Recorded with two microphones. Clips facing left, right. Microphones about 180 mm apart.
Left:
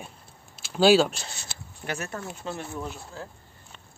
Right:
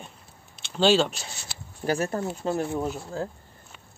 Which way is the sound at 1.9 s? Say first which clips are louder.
Right 8 dB; 35° right (ahead or behind).